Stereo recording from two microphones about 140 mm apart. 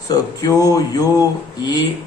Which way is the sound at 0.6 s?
25° left (ahead or behind).